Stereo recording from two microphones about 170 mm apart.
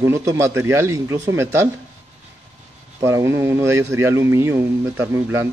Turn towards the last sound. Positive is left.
turn(degrees=-15)  # may be behind; listen again after turning